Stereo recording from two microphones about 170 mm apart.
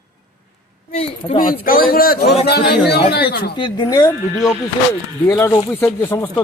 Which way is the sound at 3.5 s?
25° left (ahead or behind).